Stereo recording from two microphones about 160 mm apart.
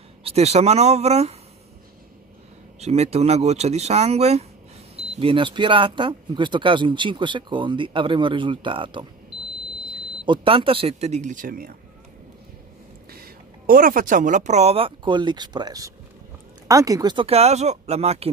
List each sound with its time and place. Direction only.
0.2 s speech: 40° right (ahead or behind)
2.8 s speech: 40° right (ahead or behind); by 11.7 s 60° right (ahead or behind)
13.1 s speech: 70° right (ahead or behind); by 18.3 s 40° right (ahead or behind)